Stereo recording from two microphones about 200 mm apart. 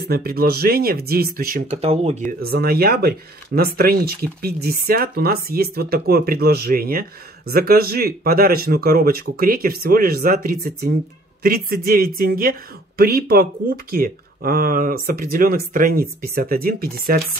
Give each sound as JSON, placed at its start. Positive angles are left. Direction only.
{"t": 0.0, "sound": "speech", "side_deg": -50}
{"t": 1.8, "sound": "speech", "side_deg": -30}
{"t": 2.5, "sound": "speech", "side_deg": -50}